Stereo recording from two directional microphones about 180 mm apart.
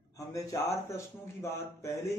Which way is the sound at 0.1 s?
15° left (ahead or behind).